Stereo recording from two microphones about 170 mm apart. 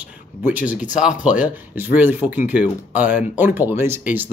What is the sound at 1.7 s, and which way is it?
Speech, 10° right (ahead or behind).